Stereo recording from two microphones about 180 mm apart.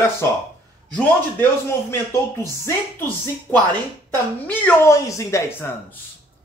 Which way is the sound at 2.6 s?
10° left (ahead or behind).